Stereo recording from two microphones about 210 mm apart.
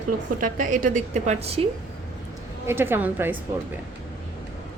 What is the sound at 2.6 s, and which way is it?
Speech, 10° right (ahead or behind).